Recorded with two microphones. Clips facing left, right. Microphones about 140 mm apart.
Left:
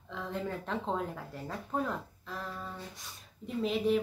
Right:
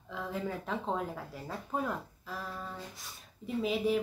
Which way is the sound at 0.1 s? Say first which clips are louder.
Even; 5° right (ahead or behind).